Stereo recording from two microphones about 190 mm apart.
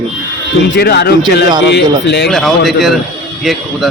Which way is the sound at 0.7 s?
60° left (ahead or behind).